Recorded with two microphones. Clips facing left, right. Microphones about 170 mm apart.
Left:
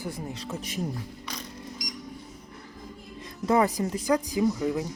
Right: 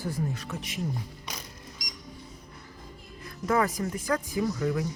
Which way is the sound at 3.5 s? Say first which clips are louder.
Left 3 dB; 20° left (ahead or behind).